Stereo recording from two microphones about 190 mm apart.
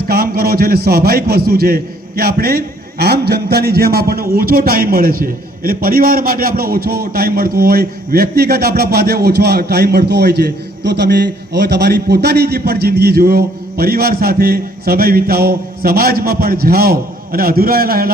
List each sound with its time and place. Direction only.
0.1 s a man's voice: 50° right (ahead or behind)